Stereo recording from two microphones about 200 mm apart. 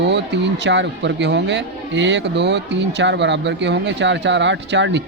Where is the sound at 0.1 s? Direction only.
60° right (ahead or behind).